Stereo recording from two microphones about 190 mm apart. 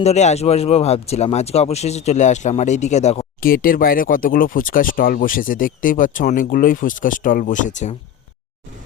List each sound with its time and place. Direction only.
0.0 s speech: 35° left (ahead or behind)
3.4 s speech: 50° left (ahead or behind)